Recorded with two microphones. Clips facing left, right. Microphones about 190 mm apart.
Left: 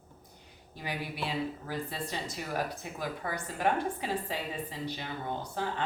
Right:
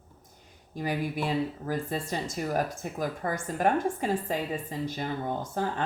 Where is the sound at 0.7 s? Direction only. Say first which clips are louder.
Right 8 dB; 45° right (ahead or behind).